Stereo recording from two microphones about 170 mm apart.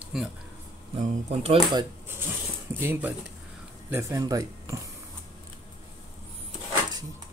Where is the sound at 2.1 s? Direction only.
15° right (ahead or behind).